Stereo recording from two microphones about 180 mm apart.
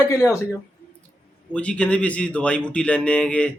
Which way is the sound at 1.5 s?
5° left (ahead or behind).